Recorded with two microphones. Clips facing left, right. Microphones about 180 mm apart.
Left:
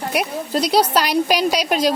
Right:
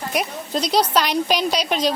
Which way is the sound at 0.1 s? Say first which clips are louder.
Left 2 dB; 10° left (ahead or behind).